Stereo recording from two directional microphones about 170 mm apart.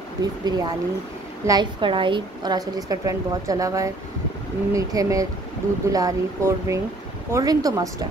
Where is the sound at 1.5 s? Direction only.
25° right (ahead or behind).